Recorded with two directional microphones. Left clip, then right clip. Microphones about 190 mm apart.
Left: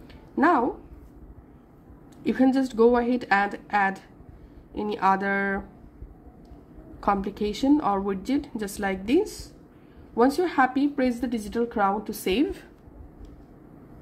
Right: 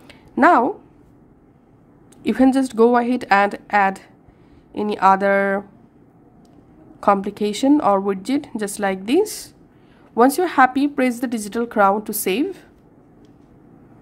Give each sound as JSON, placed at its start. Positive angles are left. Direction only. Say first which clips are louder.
{"t": 0.1, "sound": "a sound", "louder": "right 8 dB", "side_deg": -30}
{"t": 2.2, "sound": "speech", "louder": "right 6 dB", "side_deg": -25}
{"t": 7.0, "sound": "speech", "louder": "right 8 dB", "side_deg": -25}
{"t": 12.3, "sound": "a woman's voice", "louder": "right 3 dB", "side_deg": -10}